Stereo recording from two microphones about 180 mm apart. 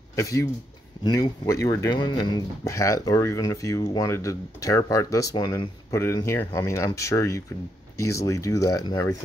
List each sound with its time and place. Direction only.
0.1 s speech: 15° left (ahead or behind)